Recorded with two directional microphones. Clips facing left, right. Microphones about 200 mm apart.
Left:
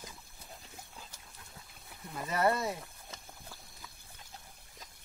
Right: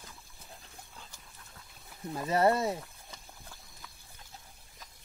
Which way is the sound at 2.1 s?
30° right (ahead or behind).